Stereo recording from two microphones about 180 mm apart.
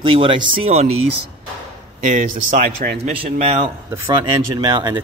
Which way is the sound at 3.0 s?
35° right (ahead or behind).